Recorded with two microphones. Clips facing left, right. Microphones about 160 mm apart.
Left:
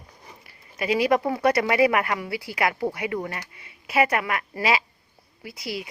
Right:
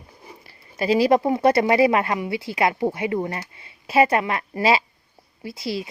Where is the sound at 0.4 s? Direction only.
30° right (ahead or behind).